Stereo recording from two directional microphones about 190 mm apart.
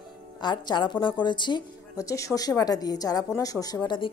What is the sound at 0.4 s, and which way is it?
Speech, 25° left (ahead or behind).